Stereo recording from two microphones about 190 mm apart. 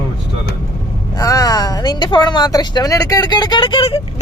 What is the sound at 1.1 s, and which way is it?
A woman's voice, 20° left (ahead or behind).